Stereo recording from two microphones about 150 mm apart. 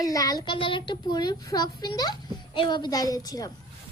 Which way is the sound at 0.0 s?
25° left (ahead or behind).